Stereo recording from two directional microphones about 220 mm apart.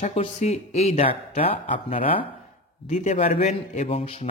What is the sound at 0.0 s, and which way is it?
A man's voice, 30° left (ahead or behind).